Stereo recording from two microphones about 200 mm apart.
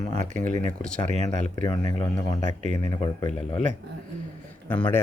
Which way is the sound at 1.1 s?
35° right (ahead or behind).